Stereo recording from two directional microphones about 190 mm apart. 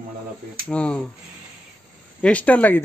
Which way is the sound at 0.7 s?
5° left (ahead or behind).